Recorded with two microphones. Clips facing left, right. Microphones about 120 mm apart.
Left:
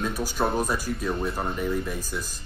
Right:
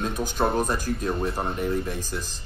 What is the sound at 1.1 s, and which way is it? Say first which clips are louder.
Speech: even; 5° right (ahead or behind).